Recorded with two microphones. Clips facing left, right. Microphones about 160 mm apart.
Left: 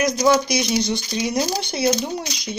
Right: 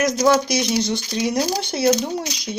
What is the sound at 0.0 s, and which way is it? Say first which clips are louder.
Speech: right 1 dB; 5° right (ahead or behind).